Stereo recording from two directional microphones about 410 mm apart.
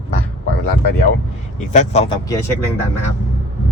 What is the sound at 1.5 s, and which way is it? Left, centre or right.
Speech, centre.